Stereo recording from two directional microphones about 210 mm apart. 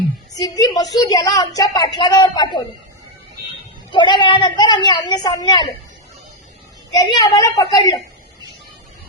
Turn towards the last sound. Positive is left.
turn(degrees=15)  # may be behind; listen again after turning